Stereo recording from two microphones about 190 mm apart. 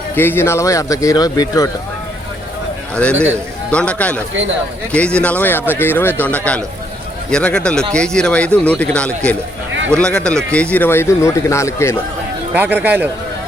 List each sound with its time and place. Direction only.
0.2 s speech: 10° left (ahead or behind)
2.9 s speech: 5° left (ahead or behind)
12.5 s a man's voice: 10° right (ahead or behind)